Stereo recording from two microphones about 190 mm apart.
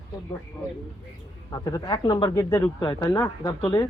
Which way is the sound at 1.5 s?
20° left (ahead or behind).